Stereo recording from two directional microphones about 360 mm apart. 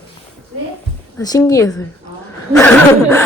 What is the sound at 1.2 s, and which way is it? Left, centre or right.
Speech, centre.